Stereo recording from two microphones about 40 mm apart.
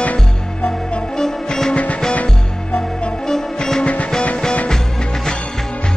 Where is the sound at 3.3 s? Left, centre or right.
Centre.